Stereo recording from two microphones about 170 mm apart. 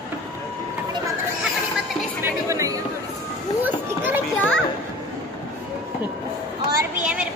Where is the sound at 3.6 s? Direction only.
10° right (ahead or behind).